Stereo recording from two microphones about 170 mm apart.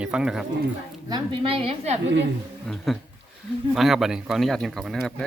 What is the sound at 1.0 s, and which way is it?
Speech, 30° right (ahead or behind).